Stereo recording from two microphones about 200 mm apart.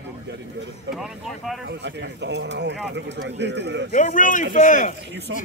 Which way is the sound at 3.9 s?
40° left (ahead or behind).